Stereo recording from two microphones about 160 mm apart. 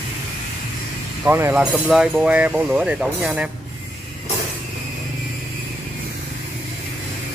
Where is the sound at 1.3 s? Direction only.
15° right (ahead or behind).